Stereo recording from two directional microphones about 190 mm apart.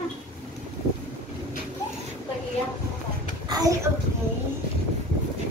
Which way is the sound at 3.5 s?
20° right (ahead or behind).